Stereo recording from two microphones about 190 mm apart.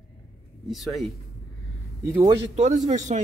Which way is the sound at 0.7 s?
Centre (ahead or behind).